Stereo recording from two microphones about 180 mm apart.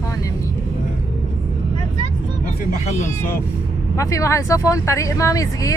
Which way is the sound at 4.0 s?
15° left (ahead or behind).